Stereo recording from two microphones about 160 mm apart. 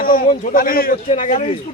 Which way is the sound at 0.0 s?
65° left (ahead or behind).